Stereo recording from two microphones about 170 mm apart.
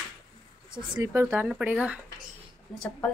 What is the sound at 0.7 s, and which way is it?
Speech, 20° right (ahead or behind).